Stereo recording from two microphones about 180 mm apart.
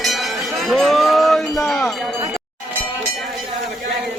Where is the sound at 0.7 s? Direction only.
Centre (ahead or behind).